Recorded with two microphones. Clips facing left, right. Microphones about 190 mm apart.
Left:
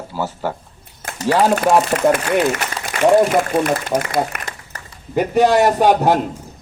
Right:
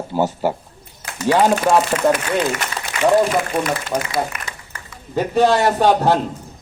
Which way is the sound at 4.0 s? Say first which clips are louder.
Left 2 dB; 50° left (ahead or behind).